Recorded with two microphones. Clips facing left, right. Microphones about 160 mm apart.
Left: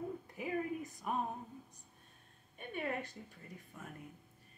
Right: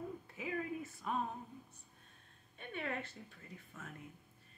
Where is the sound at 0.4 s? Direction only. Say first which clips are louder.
Left 2 dB; 15° left (ahead or behind).